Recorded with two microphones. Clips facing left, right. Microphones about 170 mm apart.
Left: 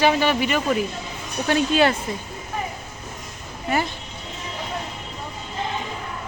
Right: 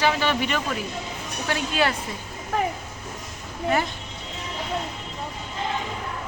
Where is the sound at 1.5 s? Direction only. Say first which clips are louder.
Left 6 dB; 25° left (ahead or behind).